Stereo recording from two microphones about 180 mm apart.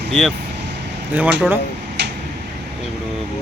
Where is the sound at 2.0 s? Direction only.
70° right (ahead or behind).